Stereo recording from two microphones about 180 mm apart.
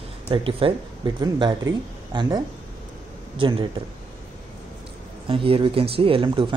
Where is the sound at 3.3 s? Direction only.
30° right (ahead or behind).